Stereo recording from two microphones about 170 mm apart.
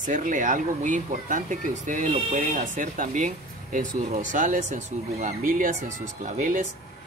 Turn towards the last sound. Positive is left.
turn(degrees=-50)  # may be behind; listen again after turning